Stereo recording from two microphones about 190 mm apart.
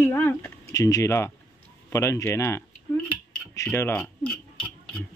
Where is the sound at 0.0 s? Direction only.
10° left (ahead or behind).